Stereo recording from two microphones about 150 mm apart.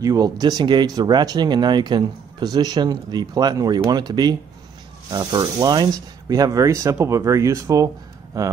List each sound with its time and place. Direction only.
0.0 s speech: 25° right (ahead or behind)